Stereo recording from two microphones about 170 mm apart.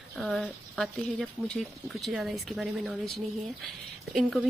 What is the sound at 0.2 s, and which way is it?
Speech, centre (ahead or behind).